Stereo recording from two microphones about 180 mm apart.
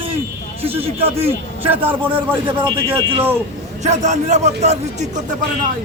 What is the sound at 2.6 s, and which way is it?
Speech, 30° right (ahead or behind).